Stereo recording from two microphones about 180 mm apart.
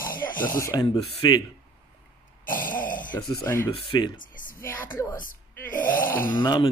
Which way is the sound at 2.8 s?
50° left (ahead or behind).